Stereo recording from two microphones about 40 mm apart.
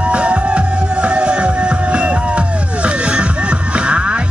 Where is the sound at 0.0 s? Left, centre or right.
Right.